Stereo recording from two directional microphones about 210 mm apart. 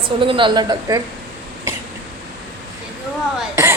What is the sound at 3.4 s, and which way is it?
Speech, 10° right (ahead or behind).